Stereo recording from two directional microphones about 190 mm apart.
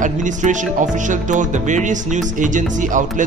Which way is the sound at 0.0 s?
40° right (ahead or behind).